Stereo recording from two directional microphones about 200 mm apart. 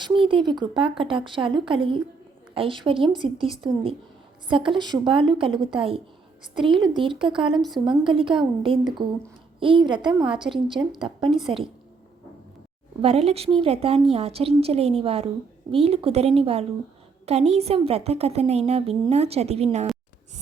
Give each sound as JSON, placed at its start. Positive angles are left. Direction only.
{"t": 0.0, "sound": "a woman's voice", "side_deg": -25}
{"t": 13.0, "sound": "a woman's voice", "side_deg": -30}